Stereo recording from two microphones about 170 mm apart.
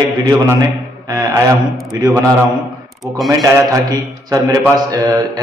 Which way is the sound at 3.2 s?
20° right (ahead or behind).